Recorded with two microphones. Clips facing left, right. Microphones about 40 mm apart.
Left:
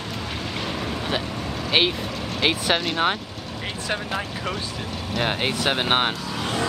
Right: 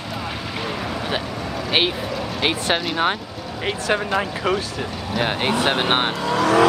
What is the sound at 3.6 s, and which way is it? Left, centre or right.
Speech, right.